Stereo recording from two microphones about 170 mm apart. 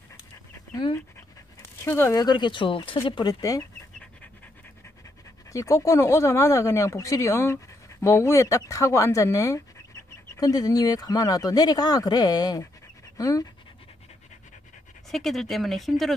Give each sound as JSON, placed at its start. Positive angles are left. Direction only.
{"t": 1.9, "sound": "speech", "side_deg": 15}
{"t": 5.5, "sound": "speech", "side_deg": 20}
{"t": 15.0, "sound": "speech", "side_deg": 0}